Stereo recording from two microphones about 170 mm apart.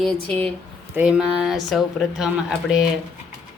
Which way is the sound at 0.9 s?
5° right (ahead or behind).